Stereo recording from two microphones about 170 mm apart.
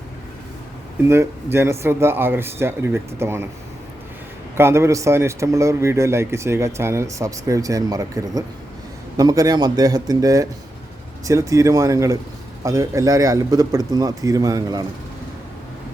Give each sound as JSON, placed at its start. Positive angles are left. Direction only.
{"t": 1.0, "sound": "a man's voice", "side_deg": -15}
{"t": 4.5, "sound": "a man's voice", "side_deg": -15}